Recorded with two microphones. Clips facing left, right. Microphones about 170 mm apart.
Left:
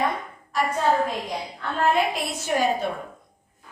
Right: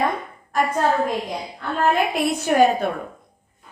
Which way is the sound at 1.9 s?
60° right (ahead or behind).